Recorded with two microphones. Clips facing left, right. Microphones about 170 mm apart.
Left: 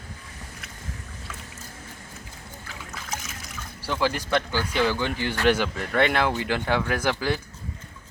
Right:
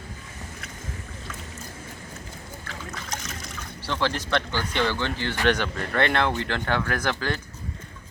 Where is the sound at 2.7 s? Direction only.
5° left (ahead or behind).